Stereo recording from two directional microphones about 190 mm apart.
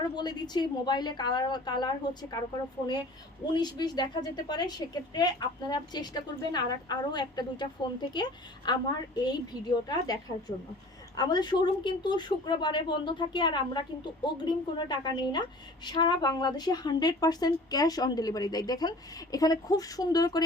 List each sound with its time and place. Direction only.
0.2 s a woman's voice: 20° left (ahead or behind)
3.4 s a woman's voice: 25° left (ahead or behind)
11.2 s a woman's voice: 20° left (ahead or behind)